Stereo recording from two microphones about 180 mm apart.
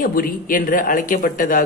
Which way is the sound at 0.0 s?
50° left (ahead or behind).